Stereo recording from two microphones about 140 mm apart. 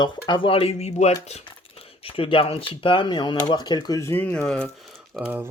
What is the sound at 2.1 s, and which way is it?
Speech, 40° left (ahead or behind).